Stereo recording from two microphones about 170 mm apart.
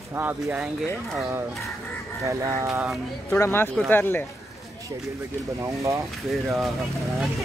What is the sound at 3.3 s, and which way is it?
Speech, 15° left (ahead or behind).